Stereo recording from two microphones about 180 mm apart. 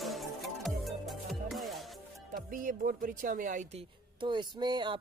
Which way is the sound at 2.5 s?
45° right (ahead or behind).